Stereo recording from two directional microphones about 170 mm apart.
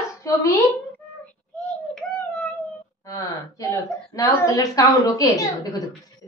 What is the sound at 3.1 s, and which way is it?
A woman's voice, 20° left (ahead or behind).